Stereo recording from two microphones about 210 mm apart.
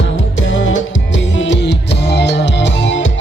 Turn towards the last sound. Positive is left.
turn(degrees=60)  # may be behind; listen again after turning